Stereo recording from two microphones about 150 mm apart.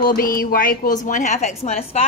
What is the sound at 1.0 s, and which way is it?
A woman's voice, 60° left (ahead or behind).